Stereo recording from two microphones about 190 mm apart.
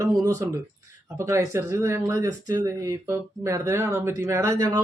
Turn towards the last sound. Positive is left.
turn(degrees=-15)  # may be behind; listen again after turning